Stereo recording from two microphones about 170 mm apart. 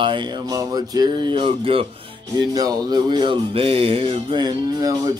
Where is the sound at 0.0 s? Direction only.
30° right (ahead or behind).